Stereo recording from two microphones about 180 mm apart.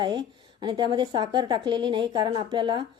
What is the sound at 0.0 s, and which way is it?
A woman's voice, 25° right (ahead or behind).